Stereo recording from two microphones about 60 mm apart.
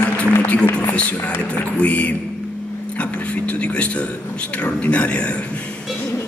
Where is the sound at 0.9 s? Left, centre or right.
Left.